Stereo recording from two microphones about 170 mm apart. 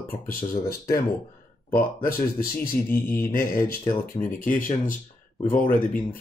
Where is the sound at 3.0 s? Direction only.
10° left (ahead or behind).